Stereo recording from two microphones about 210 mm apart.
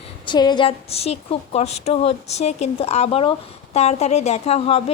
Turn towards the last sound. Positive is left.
turn(degrees=30)  # may be behind; listen again after turning